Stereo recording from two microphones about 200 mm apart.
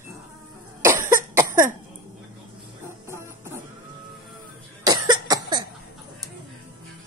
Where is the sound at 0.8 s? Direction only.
15° right (ahead or behind).